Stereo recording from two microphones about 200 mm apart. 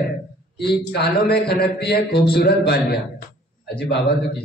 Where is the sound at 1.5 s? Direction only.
55° left (ahead or behind).